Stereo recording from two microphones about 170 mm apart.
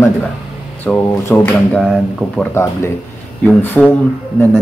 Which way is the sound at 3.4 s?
10° left (ahead or behind).